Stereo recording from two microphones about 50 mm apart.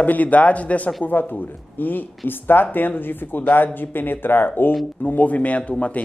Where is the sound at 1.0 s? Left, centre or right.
Left.